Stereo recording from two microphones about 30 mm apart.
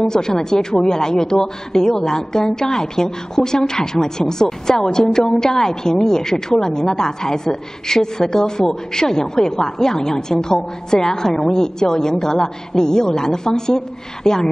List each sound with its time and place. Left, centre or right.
0.1 s a woman's voice: centre